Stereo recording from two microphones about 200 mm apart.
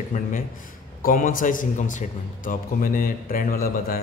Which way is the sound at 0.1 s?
40° left (ahead or behind).